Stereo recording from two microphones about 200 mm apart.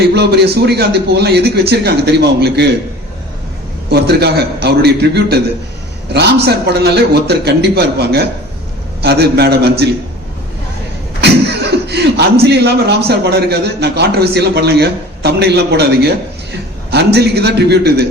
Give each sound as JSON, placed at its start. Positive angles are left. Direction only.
{"t": 0.0, "sound": "a man's voice", "side_deg": -55}
{"t": 3.8, "sound": "a man's voice", "side_deg": -55}
{"t": 11.2, "sound": "a man's voice", "side_deg": -55}